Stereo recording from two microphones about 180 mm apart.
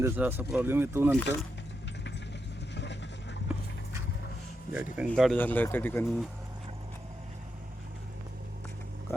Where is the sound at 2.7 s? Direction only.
75° left (ahead or behind).